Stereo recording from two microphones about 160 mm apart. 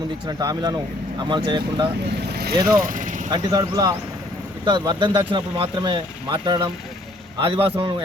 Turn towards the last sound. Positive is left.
turn(degrees=-35)  # may be behind; listen again after turning